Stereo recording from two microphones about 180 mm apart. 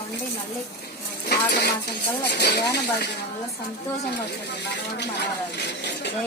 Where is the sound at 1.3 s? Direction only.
65° left (ahead or behind).